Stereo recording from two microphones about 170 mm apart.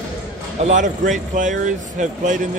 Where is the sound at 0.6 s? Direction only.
45° right (ahead or behind).